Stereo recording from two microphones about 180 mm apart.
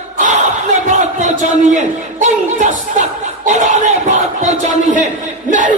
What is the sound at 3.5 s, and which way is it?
Crowd, 45° right (ahead or behind).